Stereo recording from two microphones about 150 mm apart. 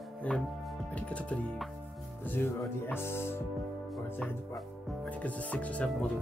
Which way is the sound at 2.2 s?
15° left (ahead or behind).